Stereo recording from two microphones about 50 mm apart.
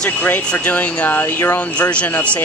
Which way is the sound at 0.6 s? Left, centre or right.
Left.